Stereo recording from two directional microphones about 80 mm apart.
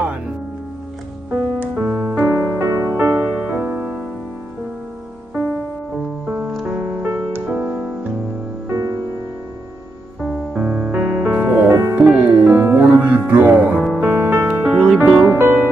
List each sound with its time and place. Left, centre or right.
1.3 s music: right
6.2 s music: centre
10.5 s music: centre
10.9 s music: centre
14.6 s music: centre
15.3 s music: right